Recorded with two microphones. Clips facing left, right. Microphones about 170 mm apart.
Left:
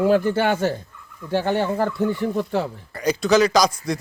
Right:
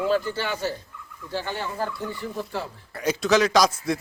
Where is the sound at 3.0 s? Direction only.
Centre (ahead or behind).